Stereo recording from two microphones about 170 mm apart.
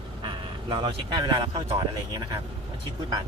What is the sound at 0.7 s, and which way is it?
Speech, 25° right (ahead or behind).